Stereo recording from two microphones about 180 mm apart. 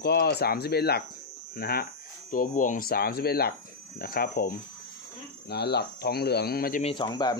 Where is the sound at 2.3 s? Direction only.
45° left (ahead or behind).